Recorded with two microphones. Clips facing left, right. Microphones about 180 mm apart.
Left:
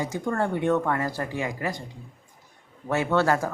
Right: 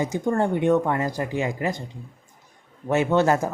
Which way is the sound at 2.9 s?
20° right (ahead or behind).